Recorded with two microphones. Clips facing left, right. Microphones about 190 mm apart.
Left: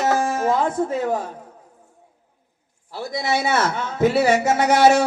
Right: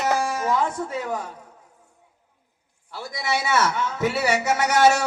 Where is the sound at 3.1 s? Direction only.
40° left (ahead or behind).